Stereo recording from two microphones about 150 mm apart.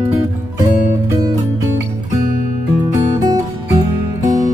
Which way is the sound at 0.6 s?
60° left (ahead or behind).